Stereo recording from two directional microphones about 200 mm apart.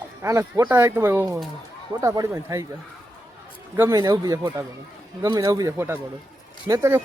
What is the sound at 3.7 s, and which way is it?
A man's voice, 15° right (ahead or behind).